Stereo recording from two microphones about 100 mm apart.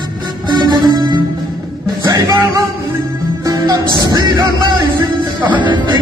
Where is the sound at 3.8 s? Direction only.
45° left (ahead or behind).